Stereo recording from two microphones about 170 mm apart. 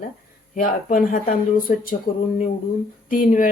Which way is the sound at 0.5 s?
55° left (ahead or behind).